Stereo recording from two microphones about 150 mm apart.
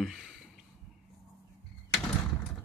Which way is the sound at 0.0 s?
Centre (ahead or behind).